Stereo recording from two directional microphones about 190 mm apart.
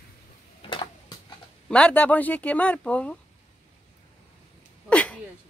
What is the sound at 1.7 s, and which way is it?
Speech, 5° left (ahead or behind).